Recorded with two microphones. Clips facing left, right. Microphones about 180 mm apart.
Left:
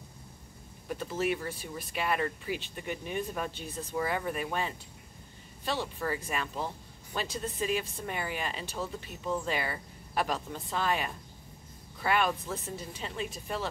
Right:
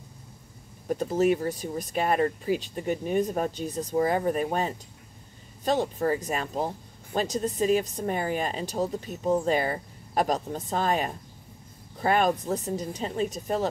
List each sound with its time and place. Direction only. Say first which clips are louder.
0.8 s a woman's voice: right 8 dB; 40° right (ahead or behind)